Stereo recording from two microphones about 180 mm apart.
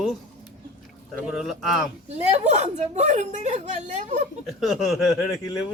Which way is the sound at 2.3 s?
35° right (ahead or behind).